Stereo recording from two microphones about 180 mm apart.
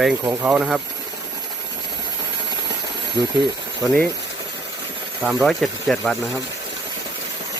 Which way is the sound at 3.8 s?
5° left (ahead or behind).